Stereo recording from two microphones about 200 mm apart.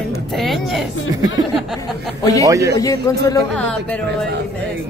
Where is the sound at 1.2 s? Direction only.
20° right (ahead or behind).